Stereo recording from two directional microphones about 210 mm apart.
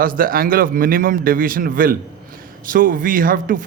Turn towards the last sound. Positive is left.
turn(degrees=-40)  # may be behind; listen again after turning